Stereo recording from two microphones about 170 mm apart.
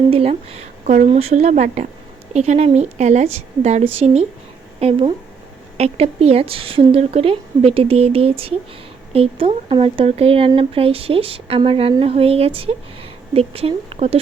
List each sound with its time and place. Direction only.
0.1 s speech: 35° right (ahead or behind)